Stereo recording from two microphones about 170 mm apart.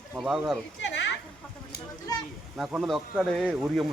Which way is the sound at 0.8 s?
90° left.